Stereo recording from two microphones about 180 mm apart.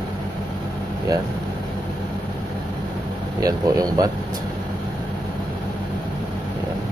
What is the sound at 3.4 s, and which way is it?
Speech, 20° right (ahead or behind).